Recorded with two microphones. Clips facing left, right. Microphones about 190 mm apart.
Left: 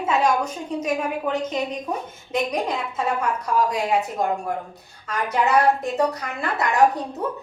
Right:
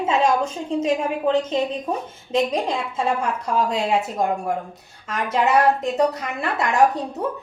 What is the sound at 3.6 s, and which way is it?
Speech, 25° right (ahead or behind).